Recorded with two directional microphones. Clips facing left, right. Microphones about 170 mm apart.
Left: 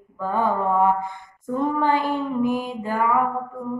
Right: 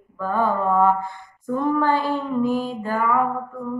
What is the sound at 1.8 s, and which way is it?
Child singing, 15° left (ahead or behind).